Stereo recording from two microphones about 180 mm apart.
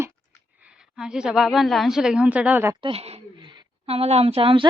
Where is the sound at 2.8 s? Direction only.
30° right (ahead or behind).